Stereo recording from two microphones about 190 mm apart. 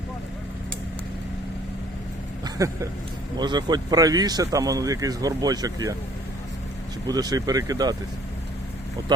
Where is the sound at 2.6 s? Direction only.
15° right (ahead or behind).